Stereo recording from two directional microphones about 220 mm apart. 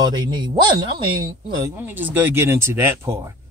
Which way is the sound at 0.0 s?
20° right (ahead or behind).